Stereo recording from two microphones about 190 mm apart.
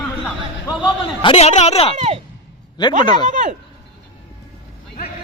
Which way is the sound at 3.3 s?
40° right (ahead or behind).